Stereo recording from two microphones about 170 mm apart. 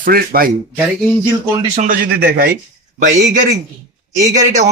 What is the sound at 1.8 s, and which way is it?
Speech, 50° right (ahead or behind).